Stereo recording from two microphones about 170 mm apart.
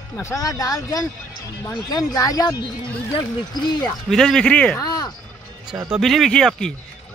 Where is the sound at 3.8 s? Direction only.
5° left (ahead or behind).